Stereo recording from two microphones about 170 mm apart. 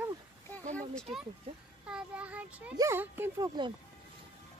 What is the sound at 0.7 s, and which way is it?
Speech, 5° left (ahead or behind).